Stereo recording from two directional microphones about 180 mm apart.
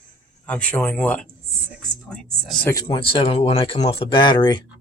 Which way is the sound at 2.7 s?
20° left (ahead or behind).